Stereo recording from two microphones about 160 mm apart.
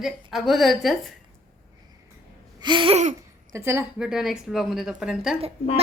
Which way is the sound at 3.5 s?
15° right (ahead or behind).